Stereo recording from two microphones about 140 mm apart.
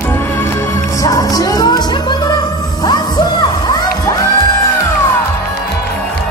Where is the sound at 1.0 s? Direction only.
25° left (ahead or behind).